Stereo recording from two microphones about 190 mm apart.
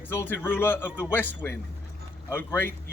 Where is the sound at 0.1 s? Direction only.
10° left (ahead or behind).